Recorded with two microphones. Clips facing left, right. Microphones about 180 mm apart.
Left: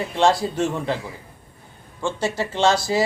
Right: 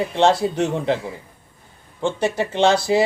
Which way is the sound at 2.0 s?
20° right (ahead or behind).